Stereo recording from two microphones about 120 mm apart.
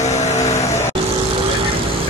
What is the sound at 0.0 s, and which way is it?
Vehicle, 70° left (ahead or behind).